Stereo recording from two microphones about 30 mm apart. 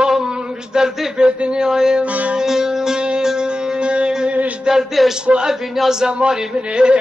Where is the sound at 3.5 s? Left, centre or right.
Right.